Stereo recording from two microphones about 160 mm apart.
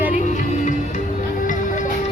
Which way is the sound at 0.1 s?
50° left (ahead or behind).